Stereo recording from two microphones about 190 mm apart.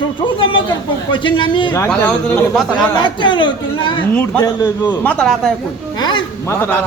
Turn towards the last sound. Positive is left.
turn(degrees=15)  # may be behind; listen again after turning